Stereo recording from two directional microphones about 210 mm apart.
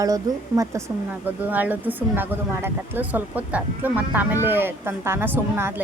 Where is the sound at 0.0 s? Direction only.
15° right (ahead or behind).